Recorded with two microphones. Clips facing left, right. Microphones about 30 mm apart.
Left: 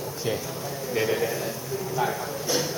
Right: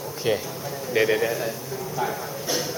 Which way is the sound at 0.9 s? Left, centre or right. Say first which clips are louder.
Right 4 dB; right.